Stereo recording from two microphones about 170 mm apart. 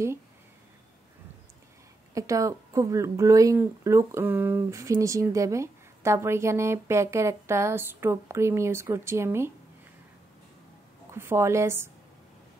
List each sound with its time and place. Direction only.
2.1 s speech: 20° right (ahead or behind)
11.1 s speech: 15° right (ahead or behind)